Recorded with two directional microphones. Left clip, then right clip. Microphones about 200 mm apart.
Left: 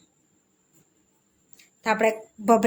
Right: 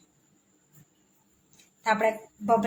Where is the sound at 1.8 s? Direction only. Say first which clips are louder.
Left 2 dB; 30° left (ahead or behind).